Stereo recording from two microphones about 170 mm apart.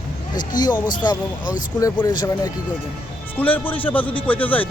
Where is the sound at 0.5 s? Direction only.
25° left (ahead or behind).